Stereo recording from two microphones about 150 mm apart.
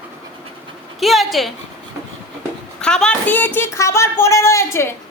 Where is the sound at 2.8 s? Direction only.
5° left (ahead or behind).